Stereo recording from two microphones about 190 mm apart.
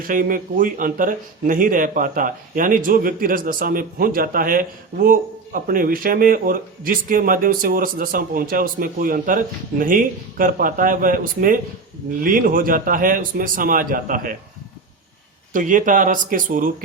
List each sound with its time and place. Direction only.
0.0 s speech: 45° right (ahead or behind)
15.5 s speech: 45° right (ahead or behind)